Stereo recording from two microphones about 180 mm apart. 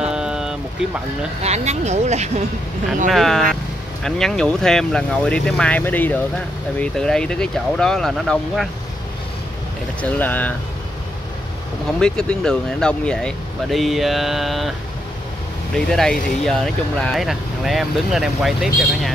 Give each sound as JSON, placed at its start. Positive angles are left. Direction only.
{"t": 0.0, "sound": "vehicle", "side_deg": -5}
{"t": 1.4, "sound": "speech", "side_deg": -40}
{"t": 3.1, "sound": "speech", "side_deg": 0}
{"t": 10.0, "sound": "speech", "side_deg": 10}
{"t": 12.0, "sound": "speech", "side_deg": 5}
{"t": 15.7, "sound": "speech", "side_deg": 5}